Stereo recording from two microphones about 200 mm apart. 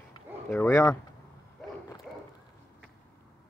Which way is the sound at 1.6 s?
Centre (ahead or behind).